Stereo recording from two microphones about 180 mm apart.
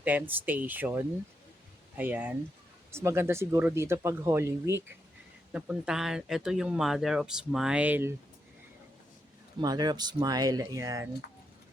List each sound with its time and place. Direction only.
0.0 s speech: 10° right (ahead or behind)
9.6 s speech: 25° right (ahead or behind)